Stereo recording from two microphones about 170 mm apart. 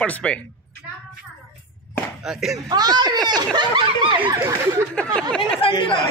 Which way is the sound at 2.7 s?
25° right (ahead or behind).